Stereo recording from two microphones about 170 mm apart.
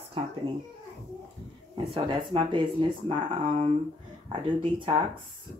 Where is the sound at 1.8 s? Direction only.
30° right (ahead or behind).